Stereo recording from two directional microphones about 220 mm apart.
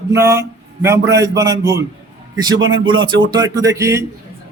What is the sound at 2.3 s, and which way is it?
Speech, 20° right (ahead or behind).